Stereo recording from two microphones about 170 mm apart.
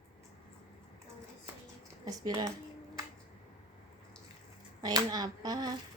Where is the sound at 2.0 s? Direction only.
25° right (ahead or behind).